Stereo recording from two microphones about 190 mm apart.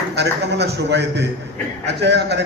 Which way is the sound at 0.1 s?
60° right (ahead or behind).